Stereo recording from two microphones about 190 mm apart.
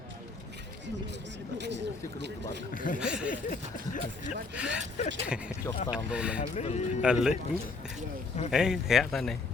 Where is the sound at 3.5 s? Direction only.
45° left (ahead or behind).